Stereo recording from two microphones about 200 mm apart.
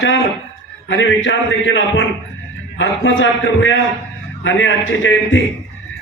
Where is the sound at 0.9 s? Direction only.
65° left (ahead or behind).